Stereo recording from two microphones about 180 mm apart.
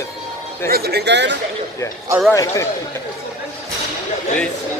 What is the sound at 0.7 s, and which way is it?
Speech, 60° right (ahead or behind).